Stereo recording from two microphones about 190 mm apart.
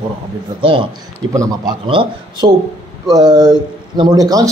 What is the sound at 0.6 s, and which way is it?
A man's voice, 25° right (ahead or behind).